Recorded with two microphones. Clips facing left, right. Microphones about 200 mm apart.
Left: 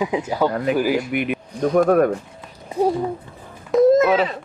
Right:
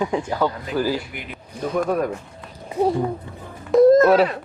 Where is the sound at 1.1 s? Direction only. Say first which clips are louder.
Left 14 dB; 65° left (ahead or behind).